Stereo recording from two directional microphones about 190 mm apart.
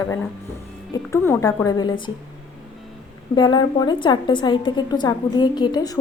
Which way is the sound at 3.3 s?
25° left (ahead or behind).